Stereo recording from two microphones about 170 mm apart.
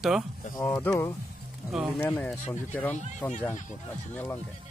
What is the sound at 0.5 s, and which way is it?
Speech, 10° left (ahead or behind).